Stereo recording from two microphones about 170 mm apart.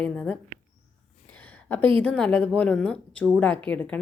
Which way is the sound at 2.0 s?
5° left (ahead or behind).